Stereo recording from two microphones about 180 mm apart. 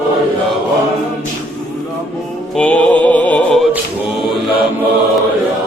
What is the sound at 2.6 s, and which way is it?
Music, 5° left (ahead or behind).